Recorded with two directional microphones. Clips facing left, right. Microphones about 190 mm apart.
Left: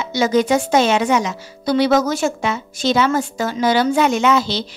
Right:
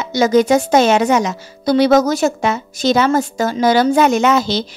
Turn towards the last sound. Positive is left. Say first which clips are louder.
# right 2 dB
turn(degrees=-45)  # may be behind; listen again after turning